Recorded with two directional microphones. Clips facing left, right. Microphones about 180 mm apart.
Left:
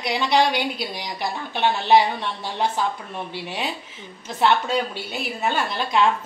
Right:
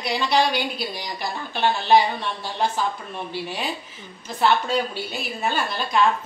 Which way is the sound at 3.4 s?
20° left (ahead or behind).